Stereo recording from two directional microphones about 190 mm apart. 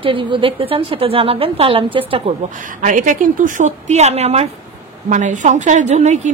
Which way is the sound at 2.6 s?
45° right (ahead or behind).